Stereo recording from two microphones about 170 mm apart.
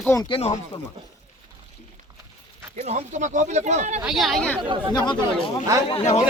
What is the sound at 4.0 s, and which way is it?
Speech, centre (ahead or behind).